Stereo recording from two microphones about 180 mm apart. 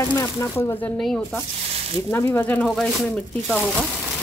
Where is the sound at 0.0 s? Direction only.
15° left (ahead or behind).